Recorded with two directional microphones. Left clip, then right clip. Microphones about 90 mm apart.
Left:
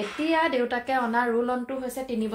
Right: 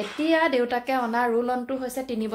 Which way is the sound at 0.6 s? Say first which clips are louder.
Right 1 dB; 30° right (ahead or behind).